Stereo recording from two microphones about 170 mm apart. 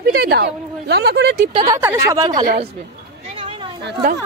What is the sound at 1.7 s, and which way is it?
Speech, 15° right (ahead or behind).